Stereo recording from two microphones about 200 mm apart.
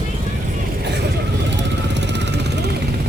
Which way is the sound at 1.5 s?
60° right (ahead or behind).